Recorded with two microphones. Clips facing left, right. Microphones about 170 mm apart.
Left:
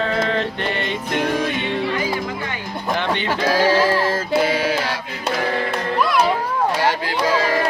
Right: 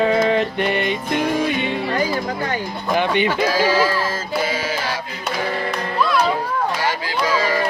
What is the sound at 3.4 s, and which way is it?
Music, 60° left (ahead or behind).